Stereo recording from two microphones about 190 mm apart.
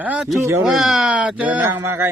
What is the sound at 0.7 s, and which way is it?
Speech, centre (ahead or behind).